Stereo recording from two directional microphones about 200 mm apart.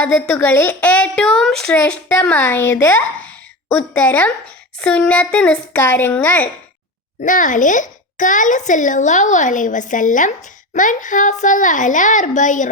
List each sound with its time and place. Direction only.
0.0 s speech: 5° left (ahead or behind)
7.2 s a child's voice: 40° left (ahead or behind)